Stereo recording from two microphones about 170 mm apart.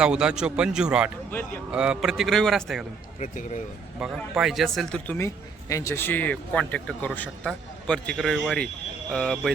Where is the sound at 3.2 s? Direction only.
45° left (ahead or behind).